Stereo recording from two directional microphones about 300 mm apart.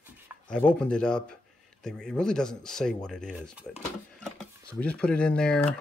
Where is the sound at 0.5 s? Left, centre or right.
Centre.